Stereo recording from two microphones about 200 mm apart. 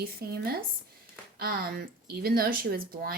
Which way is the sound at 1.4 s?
50° right (ahead or behind).